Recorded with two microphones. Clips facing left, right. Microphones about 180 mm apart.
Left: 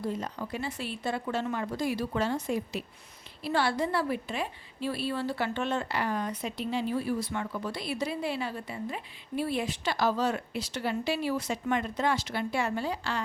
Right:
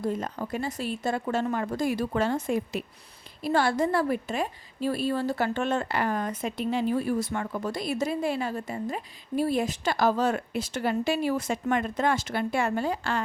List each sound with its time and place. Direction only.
0.0 s a woman's voice: 50° right (ahead or behind)